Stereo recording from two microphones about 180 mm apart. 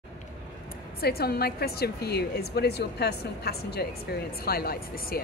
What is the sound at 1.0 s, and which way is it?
A woman's voice, 60° left (ahead or behind).